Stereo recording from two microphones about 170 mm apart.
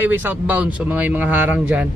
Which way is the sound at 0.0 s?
10° right (ahead or behind).